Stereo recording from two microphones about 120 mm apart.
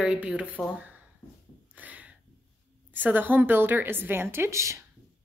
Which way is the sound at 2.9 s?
15° right (ahead or behind).